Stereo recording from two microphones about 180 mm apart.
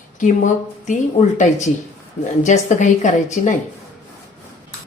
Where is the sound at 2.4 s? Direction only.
40° left (ahead or behind).